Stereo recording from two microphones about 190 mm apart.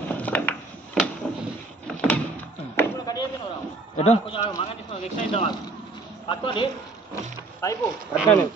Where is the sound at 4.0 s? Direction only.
30° left (ahead or behind).